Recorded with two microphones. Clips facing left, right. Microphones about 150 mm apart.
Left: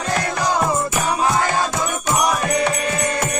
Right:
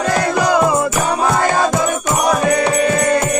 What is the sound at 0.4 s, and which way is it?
Music, 75° right (ahead or behind).